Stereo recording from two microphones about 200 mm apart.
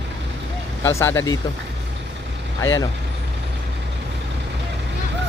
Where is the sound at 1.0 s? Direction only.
15° left (ahead or behind).